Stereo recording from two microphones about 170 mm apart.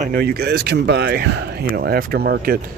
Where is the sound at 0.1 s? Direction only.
70° right (ahead or behind).